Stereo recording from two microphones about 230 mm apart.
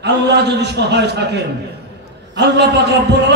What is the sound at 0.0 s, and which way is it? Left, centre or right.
A man's voice, right.